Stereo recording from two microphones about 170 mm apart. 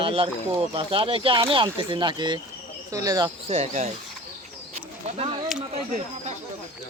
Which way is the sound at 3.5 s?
40° right (ahead or behind).